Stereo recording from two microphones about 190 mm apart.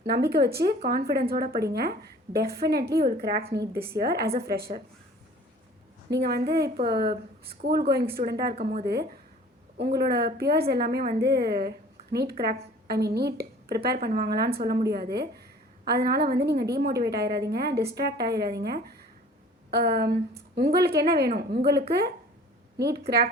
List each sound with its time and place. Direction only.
0.1 s a woman's voice: 55° right (ahead or behind)
6.1 s a woman's voice: 60° right (ahead or behind)